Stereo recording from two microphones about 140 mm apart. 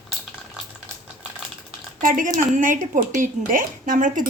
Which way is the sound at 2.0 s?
75° right (ahead or behind).